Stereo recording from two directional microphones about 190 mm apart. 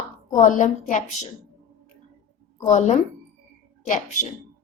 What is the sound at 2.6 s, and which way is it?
Speech, 40° left (ahead or behind).